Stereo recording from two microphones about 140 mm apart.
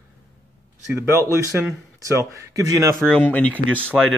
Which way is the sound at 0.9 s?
15° right (ahead or behind).